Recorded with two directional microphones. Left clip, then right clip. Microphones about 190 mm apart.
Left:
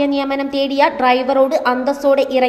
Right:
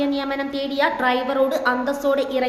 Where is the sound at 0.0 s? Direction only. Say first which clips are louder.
Left 6 dB; 30° left (ahead or behind).